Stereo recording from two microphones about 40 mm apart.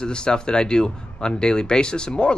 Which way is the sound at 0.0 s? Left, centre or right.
Left.